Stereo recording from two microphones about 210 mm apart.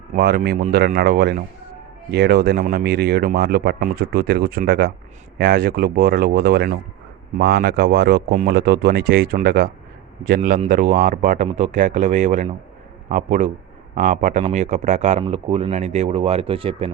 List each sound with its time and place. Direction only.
0.2 s speech: 50° right (ahead or behind); by 16.9 s 25° right (ahead or behind)